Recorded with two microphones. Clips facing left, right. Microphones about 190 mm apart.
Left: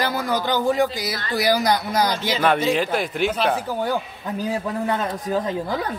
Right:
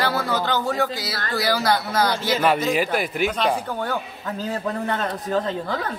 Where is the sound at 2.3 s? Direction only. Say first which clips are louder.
Left 1 dB; 5° right (ahead or behind); by 5.7 s 10° left (ahead or behind).